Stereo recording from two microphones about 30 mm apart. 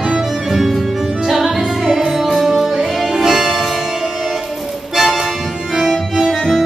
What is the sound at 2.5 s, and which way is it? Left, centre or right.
Music, centre.